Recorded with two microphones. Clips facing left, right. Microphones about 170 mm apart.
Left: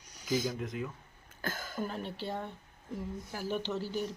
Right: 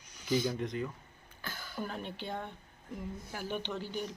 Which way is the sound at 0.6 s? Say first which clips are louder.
Right 2 dB; 5° left (ahead or behind).